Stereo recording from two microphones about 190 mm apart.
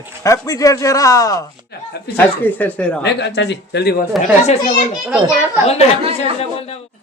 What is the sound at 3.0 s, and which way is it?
Speech, 65° left (ahead or behind).